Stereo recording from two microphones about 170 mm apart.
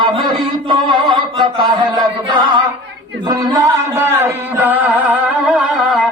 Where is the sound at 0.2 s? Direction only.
30° right (ahead or behind).